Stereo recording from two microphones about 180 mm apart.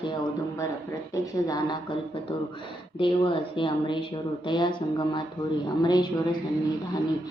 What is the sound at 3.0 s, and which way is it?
Speech, 30° left (ahead or behind).